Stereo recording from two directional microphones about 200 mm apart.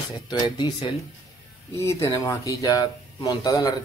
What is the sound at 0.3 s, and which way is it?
Speech, 20° left (ahead or behind).